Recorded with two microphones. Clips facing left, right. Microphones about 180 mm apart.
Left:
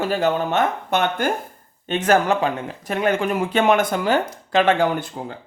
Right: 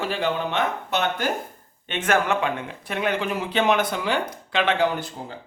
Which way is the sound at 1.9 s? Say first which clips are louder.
Left 4 dB; 35° left (ahead or behind).